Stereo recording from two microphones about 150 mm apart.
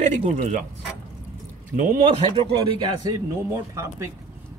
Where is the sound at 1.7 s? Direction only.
60° right (ahead or behind).